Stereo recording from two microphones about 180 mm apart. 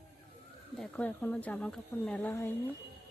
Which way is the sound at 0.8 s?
10° left (ahead or behind).